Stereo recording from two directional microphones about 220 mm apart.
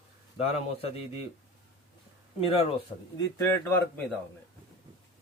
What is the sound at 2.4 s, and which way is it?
Speech, 25° left (ahead or behind).